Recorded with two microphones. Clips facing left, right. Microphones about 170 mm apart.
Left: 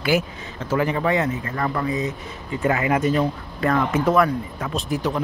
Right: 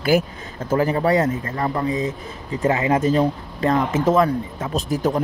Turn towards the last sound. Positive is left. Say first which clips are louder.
# right 3 dB
turn(degrees=-40)  # may be behind; listen again after turning